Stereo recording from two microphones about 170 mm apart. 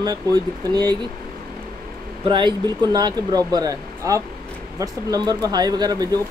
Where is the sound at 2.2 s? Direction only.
25° right (ahead or behind).